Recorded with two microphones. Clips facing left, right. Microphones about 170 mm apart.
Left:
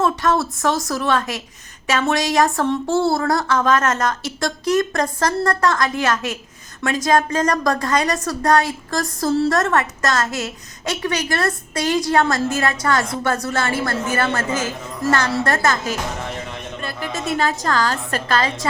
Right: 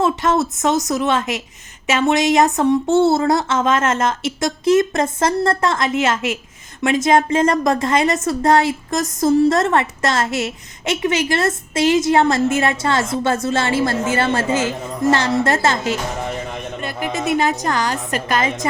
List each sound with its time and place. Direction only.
0.0 s a woman's voice: 20° right (ahead or behind)